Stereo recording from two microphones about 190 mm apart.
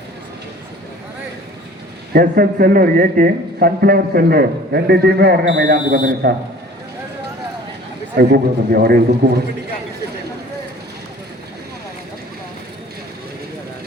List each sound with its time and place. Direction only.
2.1 s a man's voice: 50° right (ahead or behind)
8.2 s a man's voice: 55° right (ahead or behind)